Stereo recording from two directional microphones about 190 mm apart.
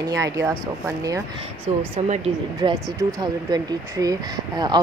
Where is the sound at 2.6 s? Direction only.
25° right (ahead or behind).